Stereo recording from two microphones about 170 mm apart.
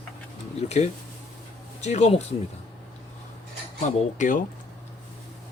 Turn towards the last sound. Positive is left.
turn(degrees=50)  # may be behind; listen again after turning